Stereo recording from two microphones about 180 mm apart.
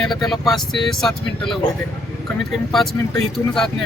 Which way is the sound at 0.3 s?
Centre (ahead or behind).